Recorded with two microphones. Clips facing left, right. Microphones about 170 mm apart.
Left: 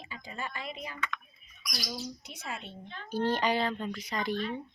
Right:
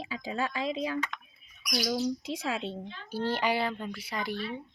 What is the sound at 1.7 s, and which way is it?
Speech, 60° right (ahead or behind).